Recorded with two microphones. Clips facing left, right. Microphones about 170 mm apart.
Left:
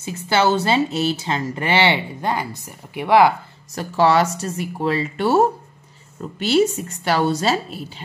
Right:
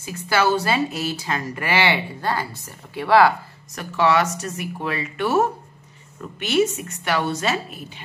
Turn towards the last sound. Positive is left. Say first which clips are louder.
# left 4 dB
turn(degrees=30)  # may be behind; listen again after turning